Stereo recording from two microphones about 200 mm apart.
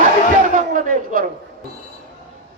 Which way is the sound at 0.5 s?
40° right (ahead or behind).